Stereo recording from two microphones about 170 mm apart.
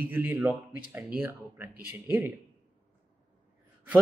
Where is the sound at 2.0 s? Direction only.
10° right (ahead or behind).